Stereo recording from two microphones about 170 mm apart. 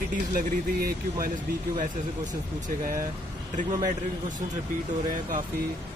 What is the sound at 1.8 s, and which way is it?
Speech, 50° right (ahead or behind).